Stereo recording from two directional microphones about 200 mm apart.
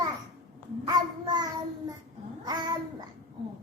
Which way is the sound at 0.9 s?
20° right (ahead or behind).